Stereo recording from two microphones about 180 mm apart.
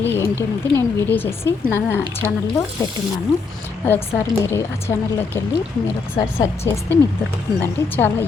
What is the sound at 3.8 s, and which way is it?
A woman's voice, 15° left (ahead or behind).